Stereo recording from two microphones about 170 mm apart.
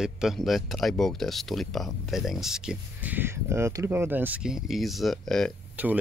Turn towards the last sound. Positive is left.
turn(degrees=-10)  # may be behind; listen again after turning